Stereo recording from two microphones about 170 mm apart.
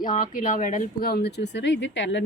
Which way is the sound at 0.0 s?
50° left (ahead or behind).